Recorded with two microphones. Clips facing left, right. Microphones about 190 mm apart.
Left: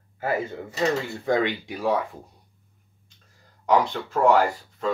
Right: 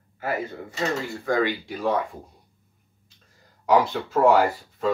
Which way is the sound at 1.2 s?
20° left (ahead or behind).